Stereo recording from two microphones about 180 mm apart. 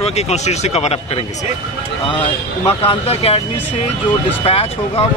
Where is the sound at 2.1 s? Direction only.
30° left (ahead or behind).